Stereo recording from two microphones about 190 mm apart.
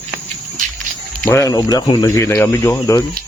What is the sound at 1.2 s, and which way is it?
Speech, 15° left (ahead or behind).